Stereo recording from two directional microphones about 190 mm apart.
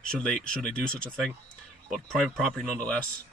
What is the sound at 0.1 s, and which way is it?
Speech, 5° left (ahead or behind).